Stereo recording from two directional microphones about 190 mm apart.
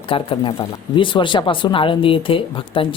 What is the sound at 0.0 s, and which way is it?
Speech, 30° left (ahead or behind).